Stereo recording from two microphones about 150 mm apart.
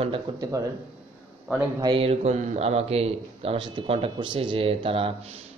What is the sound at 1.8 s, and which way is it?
A man's voice, 35° right (ahead or behind).